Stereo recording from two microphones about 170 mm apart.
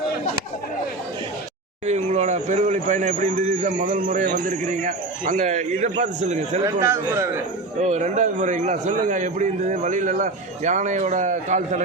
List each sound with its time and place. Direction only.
1.9 s speech: 40° right (ahead or behind)
6.8 s speech: 15° right (ahead or behind)
7.8 s speech: 45° right (ahead or behind)